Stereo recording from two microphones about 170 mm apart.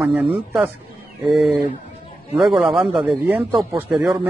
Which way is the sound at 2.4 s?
Centre (ahead or behind).